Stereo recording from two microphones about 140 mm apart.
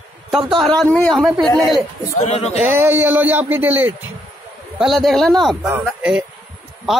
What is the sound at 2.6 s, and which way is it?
Speech, 15° right (ahead or behind).